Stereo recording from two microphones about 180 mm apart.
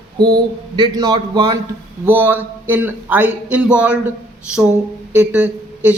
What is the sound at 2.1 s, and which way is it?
Speech, 10° right (ahead or behind).